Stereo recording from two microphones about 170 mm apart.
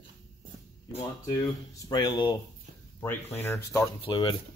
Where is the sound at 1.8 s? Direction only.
25° left (ahead or behind).